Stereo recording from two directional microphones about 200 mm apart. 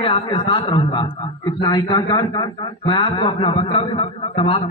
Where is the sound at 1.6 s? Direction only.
20° left (ahead or behind).